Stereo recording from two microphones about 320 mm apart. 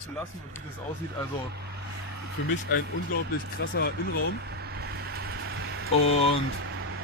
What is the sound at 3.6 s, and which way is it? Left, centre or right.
Speech, left.